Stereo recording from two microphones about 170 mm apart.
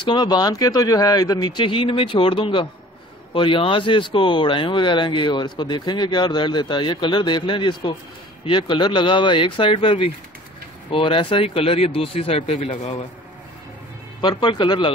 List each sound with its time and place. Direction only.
0.0 s speech: 25° left (ahead or behind)
14.2 s speech: 25° left (ahead or behind)